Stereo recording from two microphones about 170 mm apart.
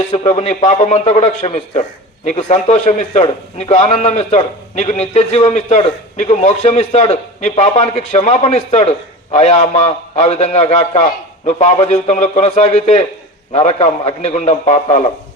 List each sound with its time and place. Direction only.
0.3 s a man's voice: 40° left (ahead or behind)